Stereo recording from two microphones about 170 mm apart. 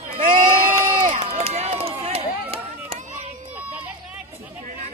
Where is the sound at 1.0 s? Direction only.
35° right (ahead or behind).